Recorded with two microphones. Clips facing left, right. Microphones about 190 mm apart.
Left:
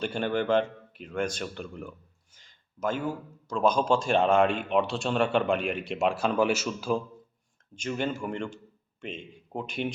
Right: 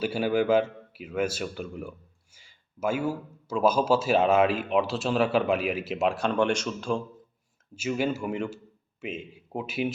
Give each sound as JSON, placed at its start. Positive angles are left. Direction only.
{"t": 0.0, "sound": "speech", "side_deg": -5}
{"t": 7.8, "sound": "a man's voice", "side_deg": -5}